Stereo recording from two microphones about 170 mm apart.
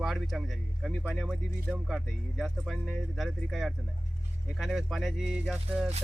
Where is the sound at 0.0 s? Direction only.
Centre (ahead or behind).